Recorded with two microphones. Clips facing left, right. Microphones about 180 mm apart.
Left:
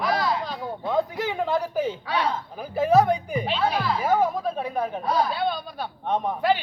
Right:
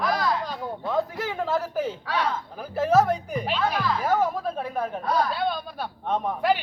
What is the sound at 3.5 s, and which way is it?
Speech, 30° left (ahead or behind).